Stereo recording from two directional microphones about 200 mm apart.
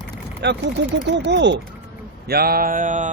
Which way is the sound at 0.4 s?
60° right (ahead or behind).